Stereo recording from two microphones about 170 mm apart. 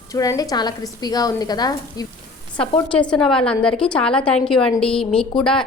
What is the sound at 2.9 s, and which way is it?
A woman's voice, 5° left (ahead or behind).